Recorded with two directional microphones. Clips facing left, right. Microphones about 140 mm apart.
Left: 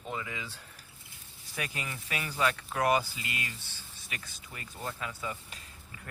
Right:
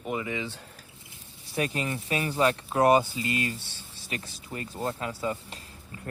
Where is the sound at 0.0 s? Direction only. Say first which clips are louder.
Right 7 dB; 15° right (ahead or behind).